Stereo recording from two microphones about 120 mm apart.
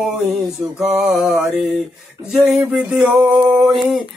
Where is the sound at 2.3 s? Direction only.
5° right (ahead or behind).